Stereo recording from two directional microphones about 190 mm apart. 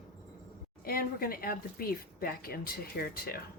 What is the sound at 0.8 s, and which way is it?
Speech, 50° left (ahead or behind).